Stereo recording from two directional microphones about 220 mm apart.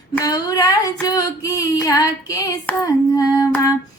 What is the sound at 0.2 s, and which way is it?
Female singing, 15° left (ahead or behind).